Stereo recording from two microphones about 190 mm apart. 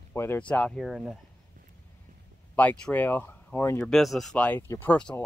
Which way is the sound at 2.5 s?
10° left (ahead or behind).